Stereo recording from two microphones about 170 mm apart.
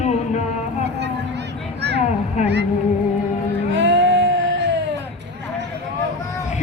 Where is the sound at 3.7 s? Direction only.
90° right.